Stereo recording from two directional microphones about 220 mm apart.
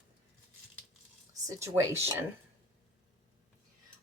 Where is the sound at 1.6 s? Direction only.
10° right (ahead or behind).